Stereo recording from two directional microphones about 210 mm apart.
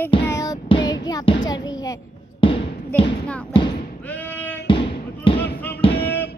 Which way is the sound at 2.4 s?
25° left (ahead or behind).